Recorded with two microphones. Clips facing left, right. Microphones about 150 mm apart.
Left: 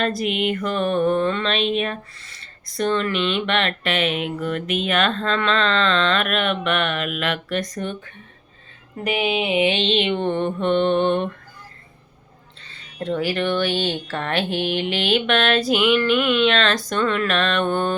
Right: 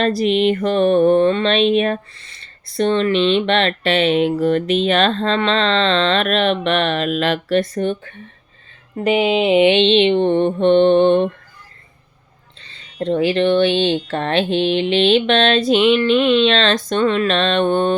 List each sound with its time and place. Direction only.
0.2 s speech: 30° right (ahead or behind)
1.7 s speech: 40° right (ahead or behind)
2.3 s speech: 30° right (ahead or behind)
9.0 s speech: 25° right (ahead or behind)
13.0 s speech: 25° right (ahead or behind)